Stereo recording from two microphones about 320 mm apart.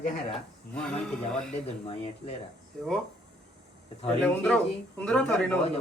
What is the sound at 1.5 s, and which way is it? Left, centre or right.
Speech, centre.